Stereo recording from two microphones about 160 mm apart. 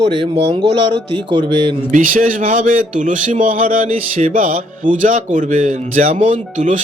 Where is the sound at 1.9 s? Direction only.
55° right (ahead or behind).